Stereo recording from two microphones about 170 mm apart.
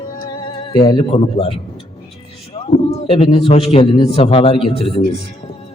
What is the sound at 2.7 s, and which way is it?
A man's voice, 40° left (ahead or behind).